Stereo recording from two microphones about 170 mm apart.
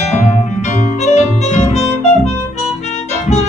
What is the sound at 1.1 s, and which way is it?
Music, 40° left (ahead or behind).